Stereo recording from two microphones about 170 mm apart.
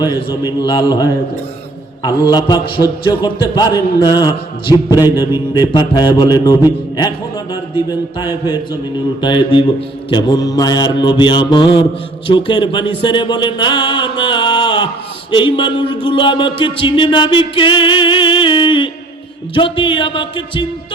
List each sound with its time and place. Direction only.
0.0 s music: 25° left (ahead or behind)